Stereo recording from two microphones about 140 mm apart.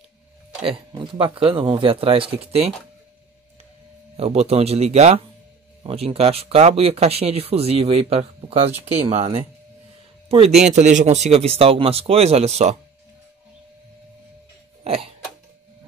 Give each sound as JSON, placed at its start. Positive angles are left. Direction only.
{"t": 0.9, "sound": "speech", "side_deg": -35}
{"t": 4.2, "sound": "speech", "side_deg": -45}
{"t": 14.8, "sound": "cough", "side_deg": -40}